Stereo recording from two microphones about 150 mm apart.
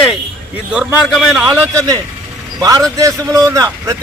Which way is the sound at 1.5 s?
25° right (ahead or behind).